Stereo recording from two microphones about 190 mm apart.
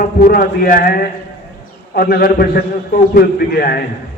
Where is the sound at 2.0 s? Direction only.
50° left (ahead or behind).